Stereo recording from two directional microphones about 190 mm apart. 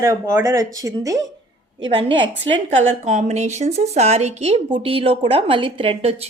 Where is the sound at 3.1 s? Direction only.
35° right (ahead or behind).